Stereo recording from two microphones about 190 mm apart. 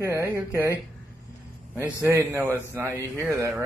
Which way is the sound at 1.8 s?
10° right (ahead or behind).